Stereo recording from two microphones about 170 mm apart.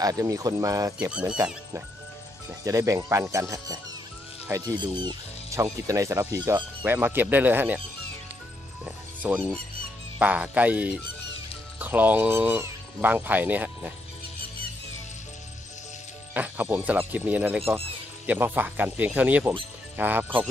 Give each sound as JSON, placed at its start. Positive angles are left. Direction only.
{"t": 0.0, "sound": "speech", "side_deg": -20}
{"t": 2.6, "sound": "speech", "side_deg": -20}
{"t": 8.8, "sound": "speech", "side_deg": -10}
{"t": 16.3, "sound": "speech", "side_deg": -10}